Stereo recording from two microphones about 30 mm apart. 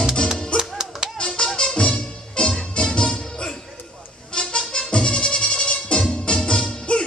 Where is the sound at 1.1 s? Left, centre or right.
Left.